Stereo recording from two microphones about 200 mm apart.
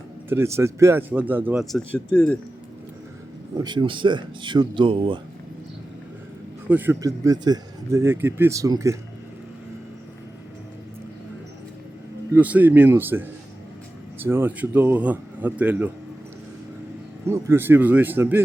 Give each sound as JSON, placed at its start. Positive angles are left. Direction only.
{"t": 0.3, "sound": "speech", "side_deg": -10}
{"t": 1.6, "sound": "speech", "side_deg": 0}
{"t": 3.6, "sound": "speech", "side_deg": -20}
{"t": 6.7, "sound": "speech", "side_deg": -10}
{"t": 12.3, "sound": "speech", "side_deg": -10}
{"t": 17.2, "sound": "speech", "side_deg": -15}